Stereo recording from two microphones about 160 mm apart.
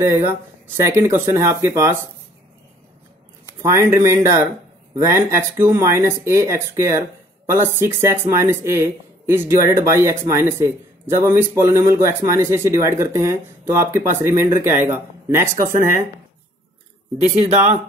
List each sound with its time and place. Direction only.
0.0 s speech: 15° right (ahead or behind)
3.6 s speech: 15° right (ahead or behind)
17.2 s speech: 40° right (ahead or behind)